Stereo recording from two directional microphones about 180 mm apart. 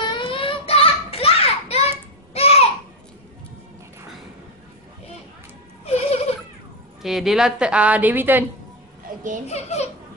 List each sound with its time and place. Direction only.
0.1 s a sound: 30° left (ahead or behind)
2.3 s babbling: 35° left (ahead or behind)
5.9 s a sound: 35° left (ahead or behind)
7.0 s a woman's voice: centre (ahead or behind)
9.1 s a child's voice: 50° right (ahead or behind)
9.5 s a child's voice: 35° left (ahead or behind)